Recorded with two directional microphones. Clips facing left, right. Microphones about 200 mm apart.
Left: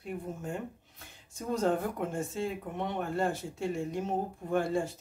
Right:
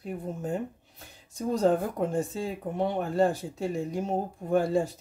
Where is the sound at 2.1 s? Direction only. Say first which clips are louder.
Right 4 dB; 35° right (ahead or behind).